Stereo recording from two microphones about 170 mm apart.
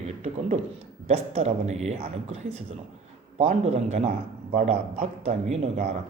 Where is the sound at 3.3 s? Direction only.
40° right (ahead or behind).